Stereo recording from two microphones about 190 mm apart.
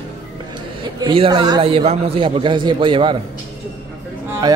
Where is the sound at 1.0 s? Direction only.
25° right (ahead or behind).